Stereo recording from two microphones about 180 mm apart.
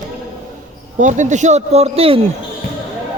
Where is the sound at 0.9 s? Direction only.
45° right (ahead or behind).